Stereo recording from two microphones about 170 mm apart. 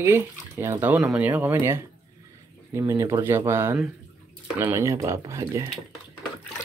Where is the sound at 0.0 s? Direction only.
15° right (ahead or behind).